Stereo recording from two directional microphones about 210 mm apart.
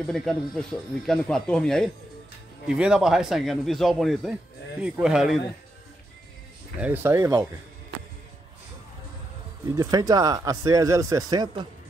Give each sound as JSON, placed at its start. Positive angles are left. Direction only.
{"t": 0.0, "sound": "speech", "side_deg": 0}
{"t": 6.8, "sound": "speech", "side_deg": -10}
{"t": 9.7, "sound": "speech", "side_deg": -15}